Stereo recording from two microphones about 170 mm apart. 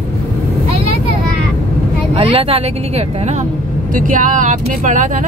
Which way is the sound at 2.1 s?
35° right (ahead or behind).